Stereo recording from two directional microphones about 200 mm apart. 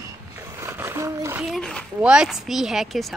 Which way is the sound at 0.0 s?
15° right (ahead or behind).